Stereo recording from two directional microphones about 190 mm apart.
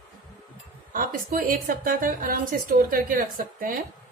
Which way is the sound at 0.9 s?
50° right (ahead or behind).